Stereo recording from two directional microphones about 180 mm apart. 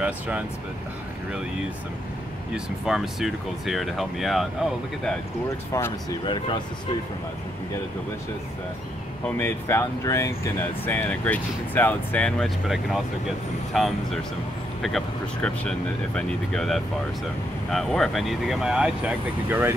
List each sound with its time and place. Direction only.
2.5 s speech: centre (ahead or behind)
5.7 s speech: 15° left (ahead or behind)
6.2 s speech: 25° left (ahead or behind)
9.4 s speech: 15° left (ahead or behind); by 19.7 s 10° right (ahead or behind)